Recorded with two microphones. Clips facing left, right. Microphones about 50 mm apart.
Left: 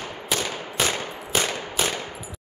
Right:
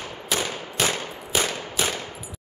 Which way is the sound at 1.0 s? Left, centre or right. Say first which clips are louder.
Left 1 dB; centre.